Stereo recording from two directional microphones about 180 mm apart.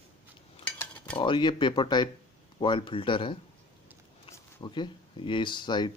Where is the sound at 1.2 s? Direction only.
25° left (ahead or behind).